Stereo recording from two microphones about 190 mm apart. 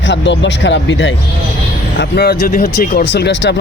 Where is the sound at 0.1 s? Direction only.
70° left (ahead or behind).